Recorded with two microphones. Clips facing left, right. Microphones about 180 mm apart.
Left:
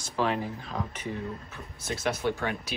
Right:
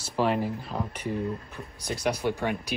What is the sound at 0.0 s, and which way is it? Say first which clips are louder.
Speech: right 3 dB; 10° right (ahead or behind).